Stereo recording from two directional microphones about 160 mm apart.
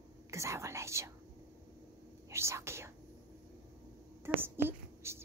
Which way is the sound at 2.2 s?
15° right (ahead or behind).